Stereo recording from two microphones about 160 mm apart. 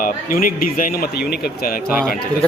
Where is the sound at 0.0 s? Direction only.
60° left (ahead or behind).